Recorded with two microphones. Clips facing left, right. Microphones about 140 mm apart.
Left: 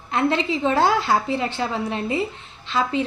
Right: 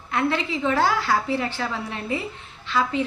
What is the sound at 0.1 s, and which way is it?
Speech, 25° left (ahead or behind).